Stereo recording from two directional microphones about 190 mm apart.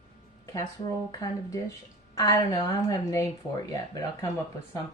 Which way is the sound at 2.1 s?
20° left (ahead or behind).